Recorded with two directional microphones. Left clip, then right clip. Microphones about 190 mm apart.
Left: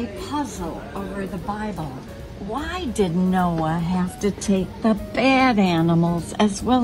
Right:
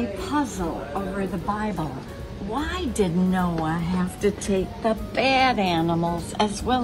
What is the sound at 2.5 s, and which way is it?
A woman's voice, 20° left (ahead or behind).